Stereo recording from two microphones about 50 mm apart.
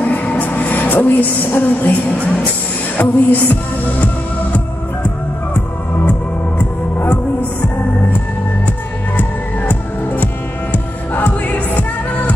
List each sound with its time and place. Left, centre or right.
0.0 s music: left
3.0 s music: left
6.6 s music: left
9.7 s music: left